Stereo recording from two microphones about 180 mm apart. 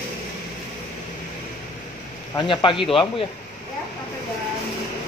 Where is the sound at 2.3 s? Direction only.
25° left (ahead or behind).